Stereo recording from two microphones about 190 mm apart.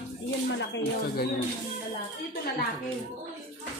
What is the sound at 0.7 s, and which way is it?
Speech, 55° left (ahead or behind).